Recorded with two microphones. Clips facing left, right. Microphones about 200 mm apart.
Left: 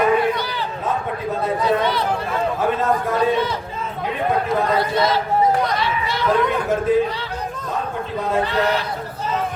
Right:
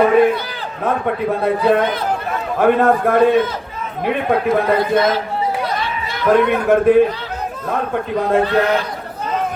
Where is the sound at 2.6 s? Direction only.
60° right (ahead or behind).